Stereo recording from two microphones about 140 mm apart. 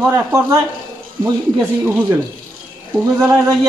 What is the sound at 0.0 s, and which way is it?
Speech, 20° right (ahead or behind).